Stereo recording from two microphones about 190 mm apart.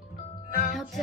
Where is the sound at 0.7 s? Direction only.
Centre (ahead or behind).